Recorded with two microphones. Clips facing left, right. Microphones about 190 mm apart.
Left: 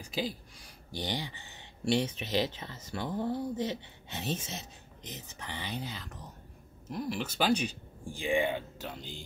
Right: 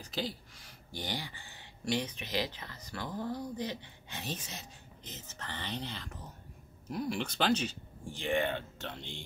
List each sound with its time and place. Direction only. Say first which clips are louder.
0.0 s speech: left 3 dB; 10° left (ahead or behind)